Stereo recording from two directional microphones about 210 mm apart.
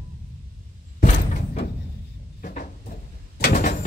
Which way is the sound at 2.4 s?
40° left (ahead or behind).